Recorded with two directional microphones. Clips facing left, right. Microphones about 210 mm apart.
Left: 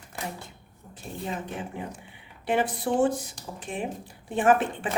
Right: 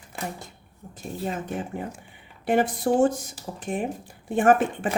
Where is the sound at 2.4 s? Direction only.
45° right (ahead or behind).